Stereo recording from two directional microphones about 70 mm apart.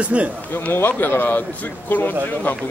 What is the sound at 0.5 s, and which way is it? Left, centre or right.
Speech, left.